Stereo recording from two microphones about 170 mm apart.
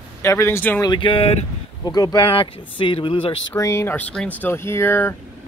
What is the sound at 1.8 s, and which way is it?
Speech, 25° left (ahead or behind).